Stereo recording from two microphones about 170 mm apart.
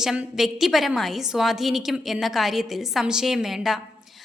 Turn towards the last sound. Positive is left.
turn(degrees=0)  # may be behind; listen again after turning